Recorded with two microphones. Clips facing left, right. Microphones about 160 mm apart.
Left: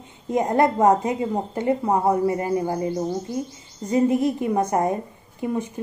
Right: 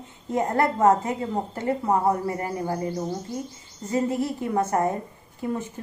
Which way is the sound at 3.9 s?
20° left (ahead or behind).